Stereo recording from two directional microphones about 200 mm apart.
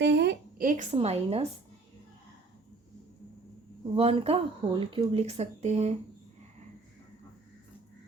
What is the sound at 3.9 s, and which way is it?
Speech, 30° right (ahead or behind).